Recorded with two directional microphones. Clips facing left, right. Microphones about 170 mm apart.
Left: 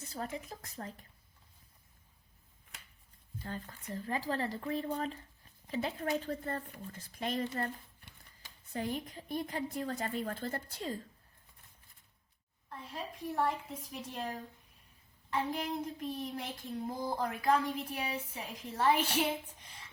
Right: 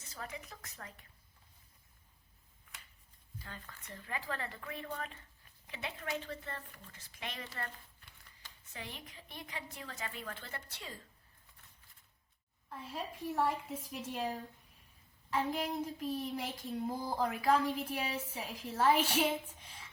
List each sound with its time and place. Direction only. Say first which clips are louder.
0.3 s a woman's voice: left 5 dB; 35° left (ahead or behind)
3.4 s a woman's voice: left 10 dB; 40° left (ahead or behind)
8.7 s a woman's voice: left 11 dB; 40° left (ahead or behind)
12.6 s child singing: right 1 dB; centre (ahead or behind)
19.6 s a sound: even; centre (ahead or behind)